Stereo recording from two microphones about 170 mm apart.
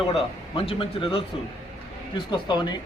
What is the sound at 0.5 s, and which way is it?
Speech, 30° left (ahead or behind).